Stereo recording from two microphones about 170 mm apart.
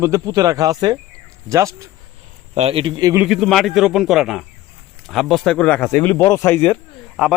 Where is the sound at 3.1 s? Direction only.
5° right (ahead or behind).